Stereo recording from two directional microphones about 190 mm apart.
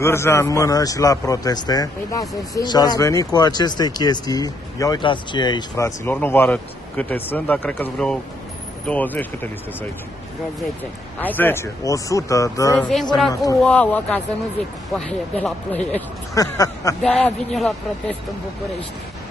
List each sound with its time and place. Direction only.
0.0 s a man's voice: 15° left (ahead or behind)
11.1 s a man's voice: 10° left (ahead or behind)
13.6 s a man's voice: 5° left (ahead or behind)
16.3 s speech: 20° left (ahead or behind)
17.0 s speech: centre (ahead or behind)